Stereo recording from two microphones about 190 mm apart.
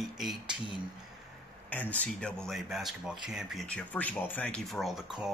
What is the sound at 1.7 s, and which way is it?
Speech, 10° left (ahead or behind).